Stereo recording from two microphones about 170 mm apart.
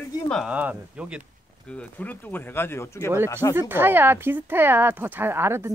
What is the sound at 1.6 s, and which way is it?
Speech, 10° left (ahead or behind).